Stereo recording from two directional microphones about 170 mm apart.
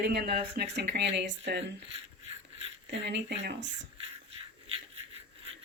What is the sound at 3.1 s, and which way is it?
Speech, 90° right.